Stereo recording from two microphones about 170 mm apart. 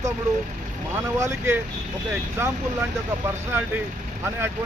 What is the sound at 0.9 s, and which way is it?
Speech, 15° right (ahead or behind).